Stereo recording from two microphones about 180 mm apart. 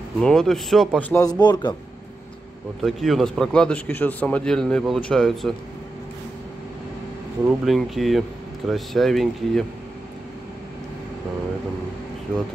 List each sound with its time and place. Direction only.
0.2 s a man's voice: 5° left (ahead or behind)
1.4 s a man's voice: 25° left (ahead or behind)
2.8 s a man's voice: centre (ahead or behind)
7.4 s a man's voice: centre (ahead or behind)